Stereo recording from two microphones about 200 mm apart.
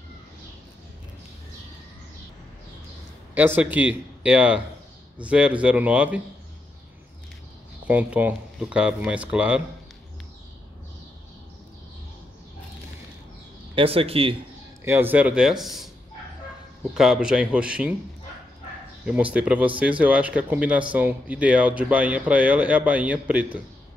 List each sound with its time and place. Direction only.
3.3 s speech: 10° right (ahead or behind)
7.8 s speech: 5° right (ahead or behind)
13.7 s speech: 30° right (ahead or behind)
14.9 s speech: 10° right (ahead or behind)
16.9 s speech: 5° right (ahead or behind)
19.3 s speech: 5° right (ahead or behind)